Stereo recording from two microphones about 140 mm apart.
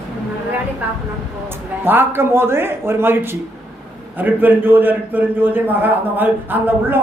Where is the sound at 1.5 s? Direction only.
15° right (ahead or behind).